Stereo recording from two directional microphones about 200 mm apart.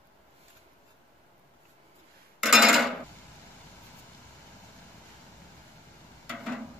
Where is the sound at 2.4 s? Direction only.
Centre (ahead or behind).